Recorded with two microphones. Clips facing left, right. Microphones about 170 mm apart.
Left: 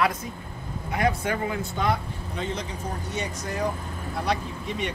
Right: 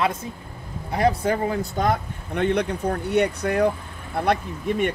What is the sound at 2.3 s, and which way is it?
Speech, 65° right (ahead or behind).